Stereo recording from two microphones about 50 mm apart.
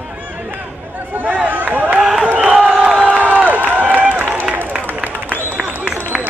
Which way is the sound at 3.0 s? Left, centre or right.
Right.